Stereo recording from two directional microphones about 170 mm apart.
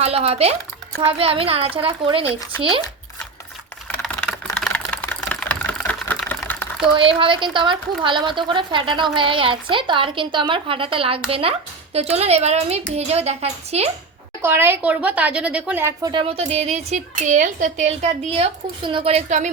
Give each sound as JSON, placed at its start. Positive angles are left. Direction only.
{"t": 0.0, "sound": "a woman's voice", "side_deg": -35}
{"t": 3.8, "sound": "a sound", "side_deg": 5}
{"t": 5.3, "sound": "typewriter", "side_deg": 10}
{"t": 6.9, "sound": "a woman's voice", "side_deg": -30}
{"t": 14.4, "sound": "a woman's voice", "side_deg": -15}
{"t": 16.1, "sound": "a woman's voice", "side_deg": -35}